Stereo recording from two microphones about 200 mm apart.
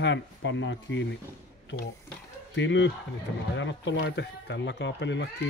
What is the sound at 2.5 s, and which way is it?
Speech, 65° left (ahead or behind).